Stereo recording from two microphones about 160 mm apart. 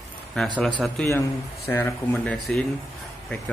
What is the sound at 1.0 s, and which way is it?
Speech, 15° left (ahead or behind).